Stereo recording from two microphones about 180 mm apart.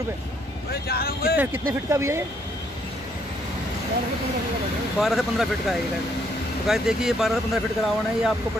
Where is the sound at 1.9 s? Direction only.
15° right (ahead or behind).